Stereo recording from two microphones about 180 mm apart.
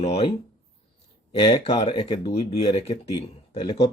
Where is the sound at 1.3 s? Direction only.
30° left (ahead or behind).